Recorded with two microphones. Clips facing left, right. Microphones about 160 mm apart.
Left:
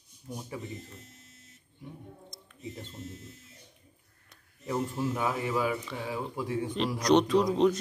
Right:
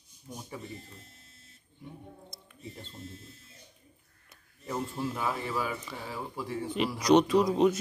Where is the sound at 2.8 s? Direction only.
20° left (ahead or behind).